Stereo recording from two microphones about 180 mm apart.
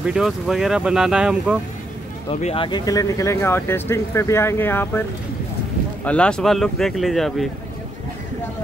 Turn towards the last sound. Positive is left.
turn(degrees=0)  # may be behind; listen again after turning